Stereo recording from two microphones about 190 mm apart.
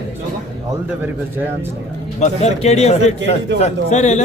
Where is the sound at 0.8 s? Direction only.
10° right (ahead or behind).